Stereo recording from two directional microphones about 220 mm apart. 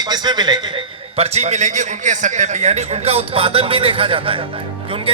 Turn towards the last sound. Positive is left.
turn(degrees=-25)  # may be behind; listen again after turning